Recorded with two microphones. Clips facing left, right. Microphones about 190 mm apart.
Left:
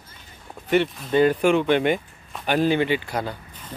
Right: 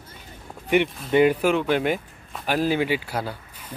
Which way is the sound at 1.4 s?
5° right (ahead or behind).